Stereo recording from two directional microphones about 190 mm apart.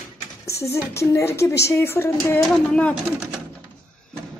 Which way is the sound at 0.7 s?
15° left (ahead or behind).